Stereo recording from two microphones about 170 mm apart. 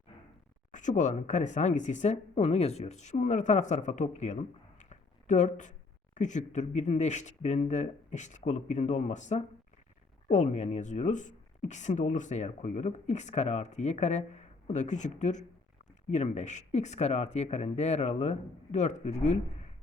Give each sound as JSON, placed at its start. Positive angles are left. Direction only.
{"t": 0.7, "sound": "speech", "side_deg": 45}